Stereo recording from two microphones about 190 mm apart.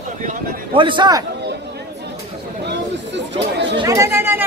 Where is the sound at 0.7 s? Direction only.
25° right (ahead or behind).